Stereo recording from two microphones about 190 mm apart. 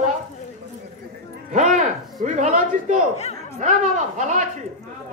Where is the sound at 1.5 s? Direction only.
40° right (ahead or behind).